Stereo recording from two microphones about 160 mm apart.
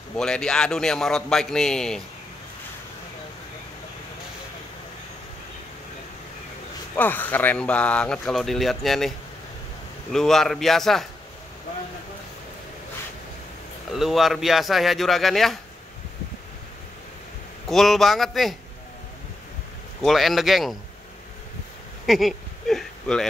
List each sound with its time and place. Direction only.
0.1 s speech: 5° left (ahead or behind)
7.0 s speech: 10° left (ahead or behind)
10.1 s speech: 5° left (ahead or behind)
13.9 s speech: centre (ahead or behind)
17.6 s speech: centre (ahead or behind)
20.0 s speech: centre (ahead or behind)
22.0 s a sound: centre (ahead or behind)